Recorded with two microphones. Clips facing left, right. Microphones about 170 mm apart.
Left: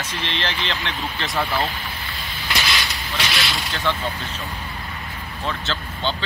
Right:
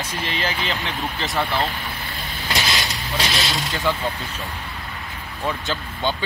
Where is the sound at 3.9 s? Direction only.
5° right (ahead or behind).